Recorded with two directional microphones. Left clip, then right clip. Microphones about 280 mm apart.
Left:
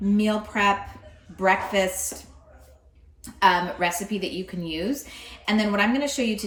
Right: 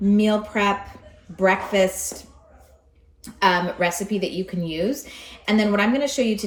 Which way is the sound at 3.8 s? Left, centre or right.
Centre.